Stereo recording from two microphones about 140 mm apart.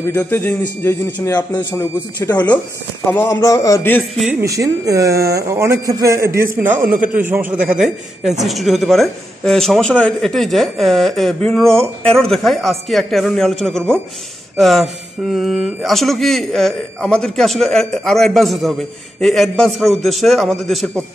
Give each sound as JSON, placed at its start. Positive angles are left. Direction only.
{"t": 0.2, "sound": "a man's voice", "side_deg": 10}
{"t": 4.3, "sound": "speech", "side_deg": -20}